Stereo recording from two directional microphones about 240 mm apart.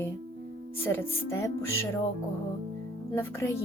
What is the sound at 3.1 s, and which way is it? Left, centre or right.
Speech, centre.